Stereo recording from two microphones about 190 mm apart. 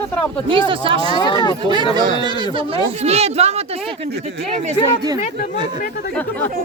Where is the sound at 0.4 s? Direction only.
25° right (ahead or behind).